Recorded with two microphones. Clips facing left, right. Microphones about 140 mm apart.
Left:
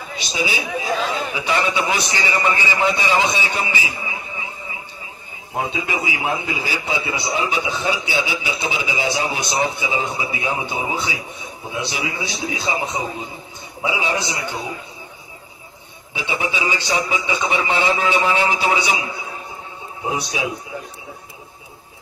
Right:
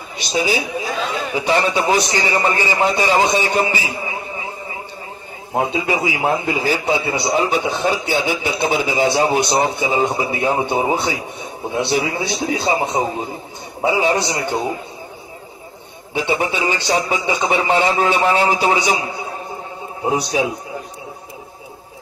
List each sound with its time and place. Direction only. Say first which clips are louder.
0.3 s a man's voice: right 5 dB; 40° right (ahead or behind)
5.5 s a man's voice: right 5 dB; 45° right (ahead or behind)
16.2 s a man's voice: right 5 dB; 45° right (ahead or behind)
20.3 s a man's voice: right 7 dB; 45° right (ahead or behind)